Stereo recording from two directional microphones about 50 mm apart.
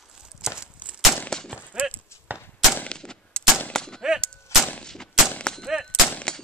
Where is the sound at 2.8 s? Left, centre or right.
Centre.